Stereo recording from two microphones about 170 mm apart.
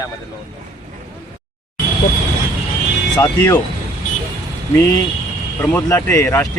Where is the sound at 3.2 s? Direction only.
15° left (ahead or behind).